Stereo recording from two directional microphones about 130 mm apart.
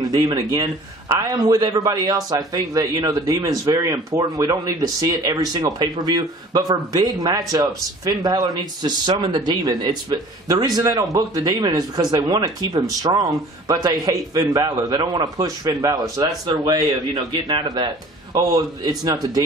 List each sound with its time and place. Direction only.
0.0 s a man's voice: 25° right (ahead or behind)